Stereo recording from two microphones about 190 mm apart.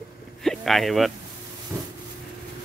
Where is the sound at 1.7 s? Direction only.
15° right (ahead or behind).